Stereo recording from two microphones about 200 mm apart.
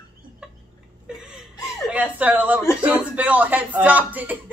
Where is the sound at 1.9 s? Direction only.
10° right (ahead or behind).